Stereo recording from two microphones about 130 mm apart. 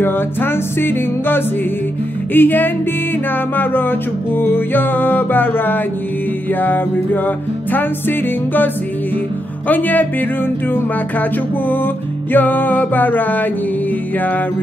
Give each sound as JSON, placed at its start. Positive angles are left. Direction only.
{"t": 0.0, "sound": "music", "side_deg": 15}
{"t": 4.4, "sound": "music", "side_deg": 15}
{"t": 9.7, "sound": "music", "side_deg": 15}
{"t": 11.7, "sound": "music", "side_deg": 15}